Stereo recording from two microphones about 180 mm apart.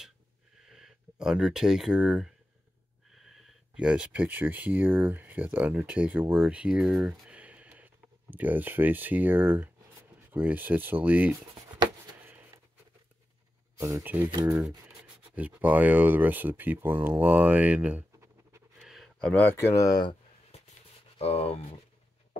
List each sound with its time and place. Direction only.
0.6 s speech: centre (ahead or behind)
13.7 s speech: 15° right (ahead or behind)
14.9 s speech: 10° right (ahead or behind)
18.8 s a sound: centre (ahead or behind); by 20.6 s 25° left (ahead or behind)
21.2 s speech: 35° left (ahead or behind)